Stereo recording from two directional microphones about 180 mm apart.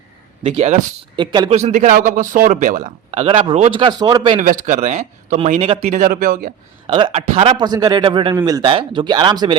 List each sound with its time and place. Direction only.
0.4 s a man's voice: 35° right (ahead or behind)
4.4 s speech: 45° right (ahead or behind)
6.8 s a man's voice: 30° right (ahead or behind)